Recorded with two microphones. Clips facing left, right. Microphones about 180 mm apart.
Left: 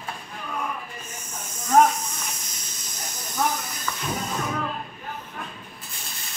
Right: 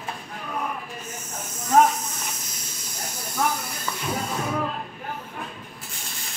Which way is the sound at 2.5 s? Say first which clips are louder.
Right 2 dB; 10° right (ahead or behind).